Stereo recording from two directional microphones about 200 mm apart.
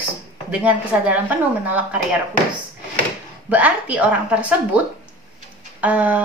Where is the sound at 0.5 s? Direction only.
5° right (ahead or behind).